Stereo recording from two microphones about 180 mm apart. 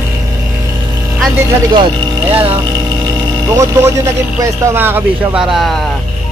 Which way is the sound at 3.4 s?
15° right (ahead or behind).